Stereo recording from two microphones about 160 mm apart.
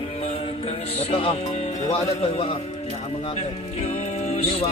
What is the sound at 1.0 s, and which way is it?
Speech, 40° left (ahead or behind).